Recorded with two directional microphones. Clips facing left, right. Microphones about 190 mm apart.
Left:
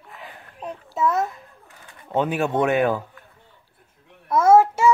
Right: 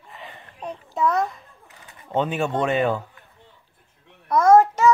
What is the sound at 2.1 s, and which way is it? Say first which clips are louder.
Speech: left 1 dB; 10° left (ahead or behind).